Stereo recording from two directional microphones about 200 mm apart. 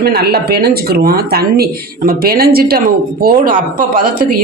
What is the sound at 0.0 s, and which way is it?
Speech, 50° right (ahead or behind).